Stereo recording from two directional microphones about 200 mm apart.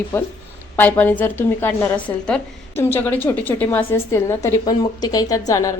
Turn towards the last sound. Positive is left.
turn(degrees=15)  # may be behind; listen again after turning